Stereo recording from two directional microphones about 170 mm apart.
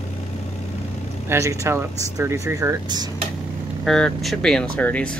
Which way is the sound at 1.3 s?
15° right (ahead or behind).